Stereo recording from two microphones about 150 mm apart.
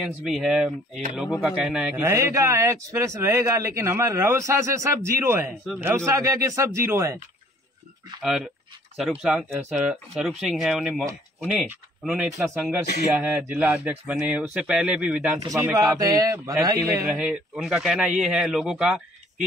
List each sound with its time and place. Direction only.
0.0 s speech: centre (ahead or behind)
2.0 s speech: 15° right (ahead or behind)
8.2 s speech: 5° right (ahead or behind)
15.4 s speech: 20° right (ahead or behind)
17.1 s speech: 5° right (ahead or behind)